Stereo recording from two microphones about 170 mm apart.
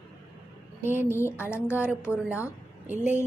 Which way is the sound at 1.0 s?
15° left (ahead or behind).